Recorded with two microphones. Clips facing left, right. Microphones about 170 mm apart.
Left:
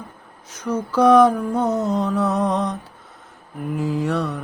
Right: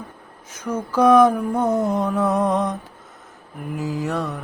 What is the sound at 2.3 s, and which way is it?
Speech, 50° right (ahead or behind).